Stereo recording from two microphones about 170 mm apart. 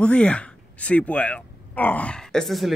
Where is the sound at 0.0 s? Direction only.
5° left (ahead or behind).